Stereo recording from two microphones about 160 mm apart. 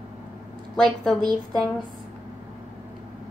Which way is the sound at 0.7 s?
5° left (ahead or behind).